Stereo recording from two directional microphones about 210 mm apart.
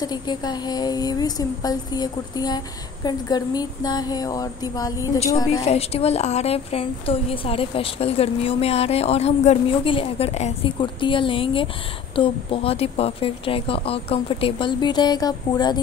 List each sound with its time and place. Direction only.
0.0 s a woman's voice: 20° left (ahead or behind)
5.7 s a woman's voice: 30° left (ahead or behind)